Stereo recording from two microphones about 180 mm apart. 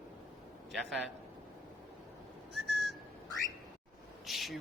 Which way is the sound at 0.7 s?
Centre (ahead or behind).